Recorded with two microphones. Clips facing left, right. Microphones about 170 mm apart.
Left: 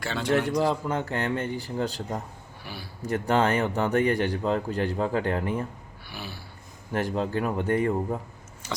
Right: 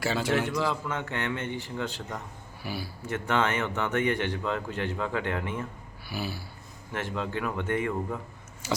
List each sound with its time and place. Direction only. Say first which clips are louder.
0.0 s a man's voice: right 2 dB; 5° right (ahead or behind)
0.6 s a man's voice: left 4 dB; 35° left (ahead or behind)
2.6 s a sound: right 5 dB; 10° right (ahead or behind)
3.1 s a man's voice: left 4 dB; 35° left (ahead or behind)
6.1 s a sound: right 5 dB; 5° right (ahead or behind)
6.9 s a man's voice: left 5 dB; 40° left (ahead or behind)